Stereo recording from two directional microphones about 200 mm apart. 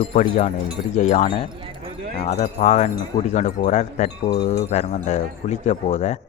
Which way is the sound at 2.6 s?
35° left (ahead or behind).